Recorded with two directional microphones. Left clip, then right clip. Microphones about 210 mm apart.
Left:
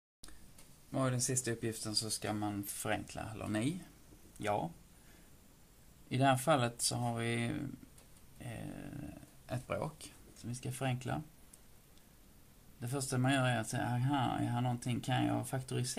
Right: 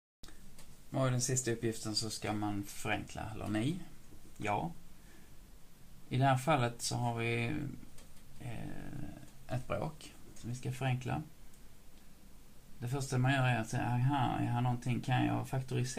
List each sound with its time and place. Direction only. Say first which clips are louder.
0.9 s speech: right 1 dB; 30° left (ahead or behind)
6.0 s speech: left 1 dB; 35° left (ahead or behind)
8.5 s a sound: even; 35° left (ahead or behind)
9.5 s speech: right 1 dB; 30° left (ahead or behind)
12.8 s speech: even; 35° left (ahead or behind)